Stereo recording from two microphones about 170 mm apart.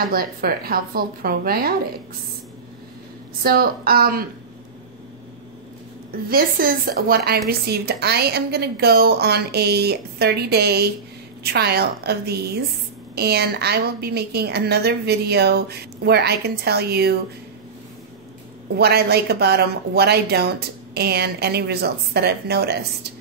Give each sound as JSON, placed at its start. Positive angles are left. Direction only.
{"t": 0.1, "sound": "speech", "side_deg": -60}
{"t": 3.4, "sound": "speech", "side_deg": -60}
{"t": 6.2, "sound": "a woman's voice", "side_deg": -60}
{"t": 18.8, "sound": "a woman's voice", "side_deg": -70}